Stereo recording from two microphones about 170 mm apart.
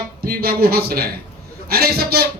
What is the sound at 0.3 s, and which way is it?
Speech, 60° right (ahead or behind).